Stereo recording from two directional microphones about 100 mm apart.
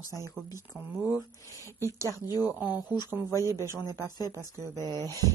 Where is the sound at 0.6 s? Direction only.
20° right (ahead or behind).